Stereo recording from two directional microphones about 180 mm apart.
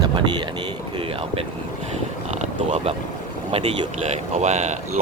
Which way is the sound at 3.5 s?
35° right (ahead or behind).